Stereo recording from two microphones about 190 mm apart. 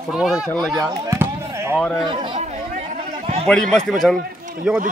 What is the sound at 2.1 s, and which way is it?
Speech, 25° right (ahead or behind).